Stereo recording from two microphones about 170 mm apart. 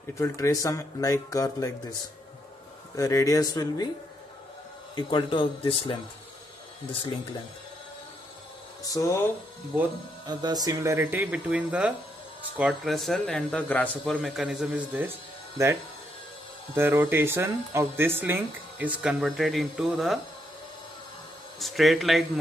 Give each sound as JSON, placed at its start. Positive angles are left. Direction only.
{"t": 0.2, "sound": "speech", "side_deg": 20}
{"t": 3.0, "sound": "speech", "side_deg": 20}
{"t": 4.9, "sound": "speech", "side_deg": 30}
{"t": 8.8, "sound": "speech", "side_deg": 20}
{"t": 10.2, "sound": "speech", "side_deg": -25}
{"t": 21.5, "sound": "speech", "side_deg": 0}